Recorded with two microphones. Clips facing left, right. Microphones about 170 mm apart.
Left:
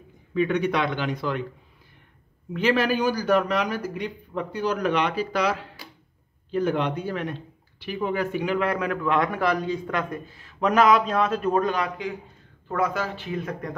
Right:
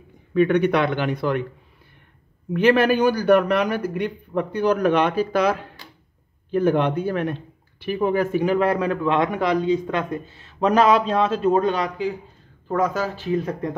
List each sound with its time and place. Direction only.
0.3 s speech: 60° right (ahead or behind)
2.5 s a man's voice: 55° right (ahead or behind); by 13.7 s 35° right (ahead or behind)